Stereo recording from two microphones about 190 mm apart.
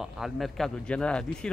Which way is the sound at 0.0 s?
Centre (ahead or behind).